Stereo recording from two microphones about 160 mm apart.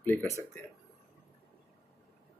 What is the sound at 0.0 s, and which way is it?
Speech, 10° left (ahead or behind).